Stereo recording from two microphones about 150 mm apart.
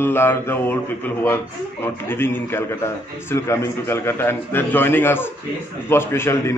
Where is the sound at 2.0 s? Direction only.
15° left (ahead or behind).